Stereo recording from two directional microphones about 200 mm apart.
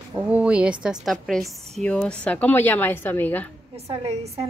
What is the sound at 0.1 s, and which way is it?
A woman's voice, 5° right (ahead or behind).